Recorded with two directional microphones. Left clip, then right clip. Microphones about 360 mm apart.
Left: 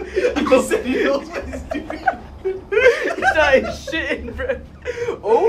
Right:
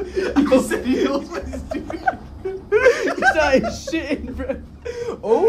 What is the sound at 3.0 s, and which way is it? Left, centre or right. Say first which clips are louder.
Speech: left 1 dB; right.